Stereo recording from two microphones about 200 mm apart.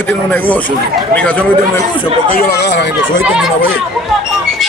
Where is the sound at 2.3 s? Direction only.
55° left (ahead or behind).